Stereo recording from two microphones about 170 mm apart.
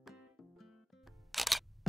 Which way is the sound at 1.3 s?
Centre (ahead or behind).